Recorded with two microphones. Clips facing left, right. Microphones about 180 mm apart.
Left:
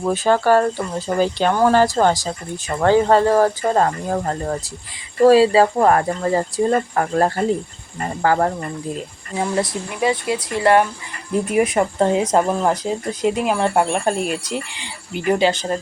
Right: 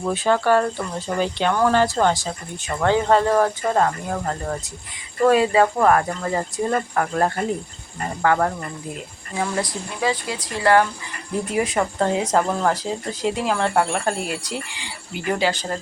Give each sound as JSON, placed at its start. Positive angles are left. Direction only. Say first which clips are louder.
{"t": 0.0, "sound": "speech", "louder": "left 3 dB", "side_deg": 40}